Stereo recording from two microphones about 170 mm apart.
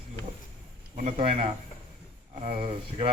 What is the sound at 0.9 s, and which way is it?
A man's voice, 50° right (ahead or behind).